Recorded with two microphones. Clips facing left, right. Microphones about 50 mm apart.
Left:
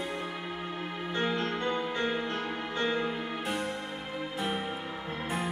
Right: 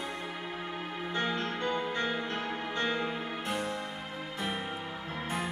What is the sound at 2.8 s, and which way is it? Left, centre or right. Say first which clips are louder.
Music: left 2 dB; centre.